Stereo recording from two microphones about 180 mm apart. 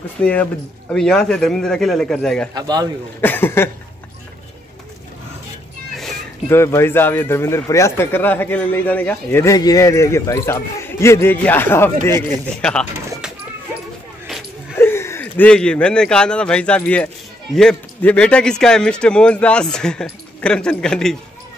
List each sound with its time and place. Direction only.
0.2 s a man's voice: 10° left (ahead or behind)
2.5 s a man's voice: 20° right (ahead or behind)
3.2 s speech: 10° left (ahead or behind)
6.5 s speech: 15° left (ahead or behind)
14.8 s a man's voice: 15° left (ahead or behind)